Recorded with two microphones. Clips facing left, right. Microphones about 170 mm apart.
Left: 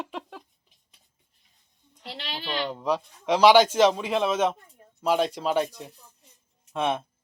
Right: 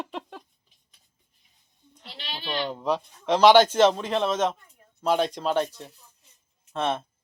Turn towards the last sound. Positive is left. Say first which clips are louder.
# left 1 dB
turn(degrees=10)  # may be behind; listen again after turning